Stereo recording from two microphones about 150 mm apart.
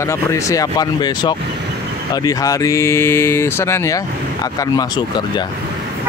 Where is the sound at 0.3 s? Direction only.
20° left (ahead or behind).